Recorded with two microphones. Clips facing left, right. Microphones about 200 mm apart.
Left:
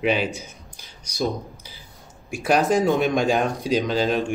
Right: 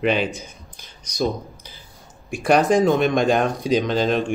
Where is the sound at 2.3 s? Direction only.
5° left (ahead or behind).